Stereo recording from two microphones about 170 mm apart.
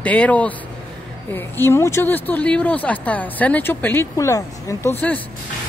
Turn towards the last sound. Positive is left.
turn(degrees=10)  # may be behind; listen again after turning